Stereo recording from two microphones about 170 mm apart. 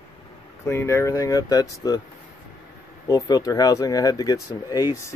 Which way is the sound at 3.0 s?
20° left (ahead or behind).